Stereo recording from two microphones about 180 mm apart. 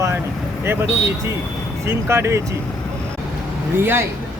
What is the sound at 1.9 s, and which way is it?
Speech, 15° right (ahead or behind).